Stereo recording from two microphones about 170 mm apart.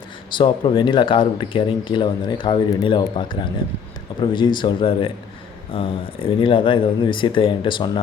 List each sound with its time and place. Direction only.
0.3 s speech: 30° left (ahead or behind)